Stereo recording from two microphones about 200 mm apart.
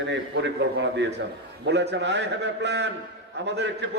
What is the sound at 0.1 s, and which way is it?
A man's voice, 65° right (ahead or behind).